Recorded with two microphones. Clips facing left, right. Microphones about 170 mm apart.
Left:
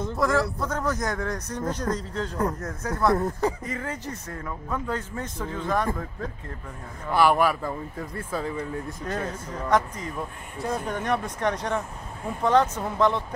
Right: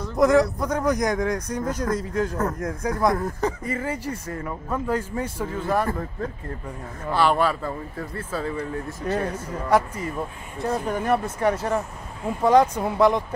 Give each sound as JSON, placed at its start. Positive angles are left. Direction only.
{"t": 0.1, "sound": "speech", "side_deg": -20}
{"t": 3.2, "sound": "speech", "side_deg": 15}
{"t": 3.6, "sound": "speech", "side_deg": -5}
{"t": 7.1, "sound": "speech", "side_deg": 10}
{"t": 9.0, "sound": "speech", "side_deg": -10}